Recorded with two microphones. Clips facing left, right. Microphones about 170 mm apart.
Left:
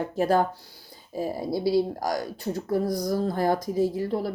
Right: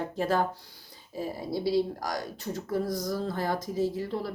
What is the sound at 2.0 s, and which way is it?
Speech, 35° left (ahead or behind).